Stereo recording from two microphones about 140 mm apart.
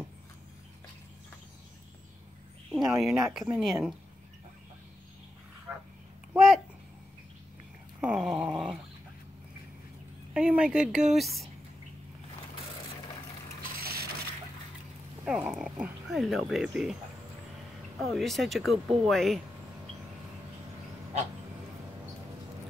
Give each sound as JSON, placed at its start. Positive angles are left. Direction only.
{"t": 2.7, "sound": "speech", "side_deg": 0}
{"t": 5.7, "sound": "a sound", "side_deg": -10}
{"t": 6.3, "sound": "babbling", "side_deg": 0}
{"t": 8.0, "sound": "dog", "side_deg": -5}
{"t": 10.3, "sound": "speech", "side_deg": -5}
{"t": 13.7, "sound": "a sound", "side_deg": -90}
{"t": 15.2, "sound": "speech", "side_deg": -5}
{"t": 17.9, "sound": "speech", "side_deg": 0}